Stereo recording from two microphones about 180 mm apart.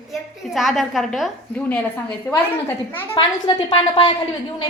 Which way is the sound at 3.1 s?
25° left (ahead or behind).